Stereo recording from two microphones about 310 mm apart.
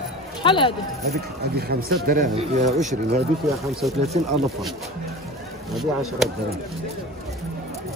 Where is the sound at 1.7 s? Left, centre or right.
Right.